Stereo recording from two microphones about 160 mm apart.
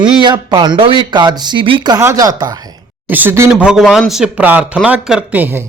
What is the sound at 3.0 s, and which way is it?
A man's voice, 10° right (ahead or behind).